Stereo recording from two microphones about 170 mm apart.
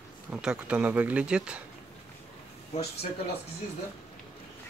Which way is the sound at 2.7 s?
40° left (ahead or behind).